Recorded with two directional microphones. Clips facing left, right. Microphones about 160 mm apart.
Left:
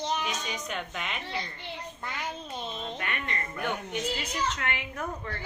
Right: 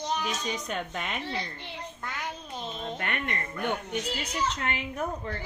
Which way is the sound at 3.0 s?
55° right (ahead or behind).